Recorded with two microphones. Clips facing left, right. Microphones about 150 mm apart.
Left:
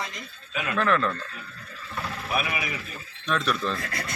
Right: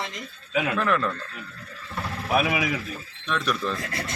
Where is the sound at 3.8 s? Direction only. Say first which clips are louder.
Right 2 dB; 25° right (ahead or behind).